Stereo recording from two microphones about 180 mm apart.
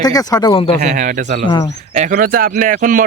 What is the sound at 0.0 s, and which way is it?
Speech, 20° left (ahead or behind).